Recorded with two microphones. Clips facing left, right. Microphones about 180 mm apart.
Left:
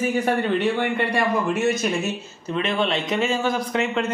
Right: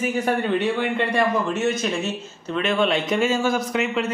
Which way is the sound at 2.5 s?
30° left (ahead or behind).